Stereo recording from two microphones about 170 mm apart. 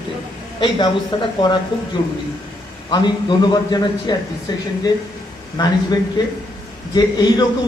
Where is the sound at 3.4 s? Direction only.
25° left (ahead or behind).